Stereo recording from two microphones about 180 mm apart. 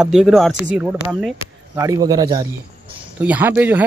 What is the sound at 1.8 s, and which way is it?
Speech, 20° right (ahead or behind).